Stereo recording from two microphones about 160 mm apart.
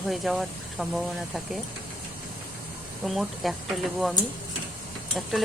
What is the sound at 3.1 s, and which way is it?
Speech, centre (ahead or behind).